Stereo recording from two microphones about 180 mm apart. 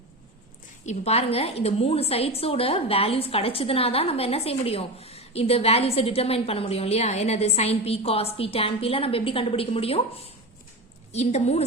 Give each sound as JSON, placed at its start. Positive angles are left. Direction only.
{"t": 0.9, "sound": "a woman's voice", "side_deg": 35}